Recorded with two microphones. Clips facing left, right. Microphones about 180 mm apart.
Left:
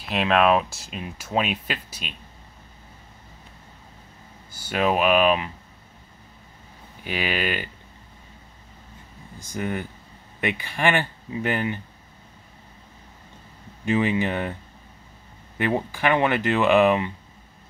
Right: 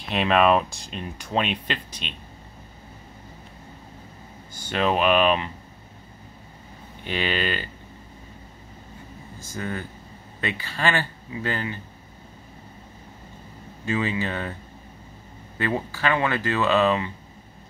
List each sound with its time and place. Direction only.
0.0 s speech: centre (ahead or behind)
4.6 s speech: 10° left (ahead or behind)
7.1 s speech: 10° left (ahead or behind)
9.4 s speech: 15° left (ahead or behind)
13.8 s speech: 15° left (ahead or behind)
15.5 s speech: 15° left (ahead or behind)